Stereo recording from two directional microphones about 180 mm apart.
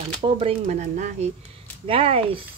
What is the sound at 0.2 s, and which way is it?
Speech, 30° right (ahead or behind).